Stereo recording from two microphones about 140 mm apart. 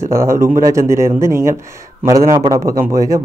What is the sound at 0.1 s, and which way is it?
Speech, 20° right (ahead or behind).